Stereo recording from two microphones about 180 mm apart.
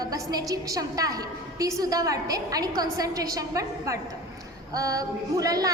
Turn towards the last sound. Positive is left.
turn(degrees=-20)  # may be behind; listen again after turning